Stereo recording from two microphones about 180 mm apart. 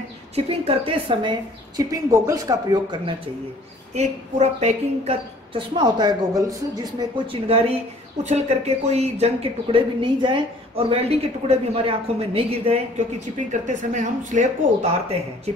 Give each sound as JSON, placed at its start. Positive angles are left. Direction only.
{"t": 0.5, "sound": "a woman's voice", "side_deg": -30}
{"t": 1.9, "sound": "a woman's voice", "side_deg": -15}
{"t": 3.9, "sound": "a woman's voice", "side_deg": -40}
{"t": 13.5, "sound": "speech", "side_deg": -45}